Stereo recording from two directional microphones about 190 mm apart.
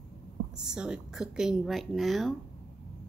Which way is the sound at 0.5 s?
5° right (ahead or behind).